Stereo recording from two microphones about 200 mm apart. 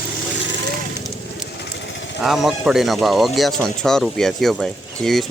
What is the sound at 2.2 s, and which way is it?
Speech, centre (ahead or behind).